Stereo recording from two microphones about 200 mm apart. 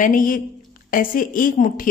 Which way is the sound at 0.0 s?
45° left (ahead or behind).